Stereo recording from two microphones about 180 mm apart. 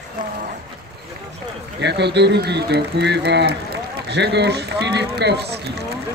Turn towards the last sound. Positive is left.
turn(degrees=-65)  # may be behind; listen again after turning